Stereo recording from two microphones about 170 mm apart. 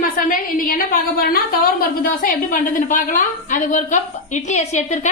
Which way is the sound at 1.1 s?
60° left (ahead or behind).